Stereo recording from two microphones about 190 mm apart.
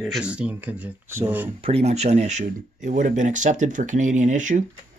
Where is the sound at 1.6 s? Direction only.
35° right (ahead or behind).